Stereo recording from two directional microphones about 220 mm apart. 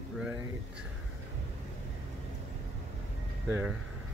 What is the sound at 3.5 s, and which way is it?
Speech, 10° right (ahead or behind).